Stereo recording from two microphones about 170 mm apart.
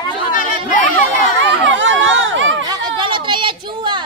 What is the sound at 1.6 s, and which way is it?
Chatter, 90° right.